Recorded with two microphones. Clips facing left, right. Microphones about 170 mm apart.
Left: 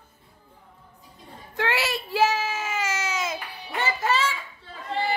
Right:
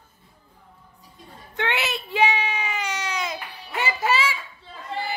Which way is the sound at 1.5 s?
Centre (ahead or behind).